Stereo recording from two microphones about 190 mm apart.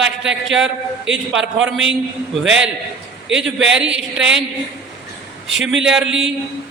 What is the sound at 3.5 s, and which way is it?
Speech, 5° right (ahead or behind).